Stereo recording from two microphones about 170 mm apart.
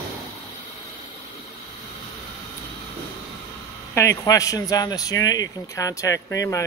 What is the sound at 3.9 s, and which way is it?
A man's voice, 20° left (ahead or behind).